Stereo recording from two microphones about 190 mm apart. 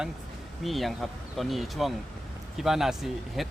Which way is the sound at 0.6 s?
Centre (ahead or behind).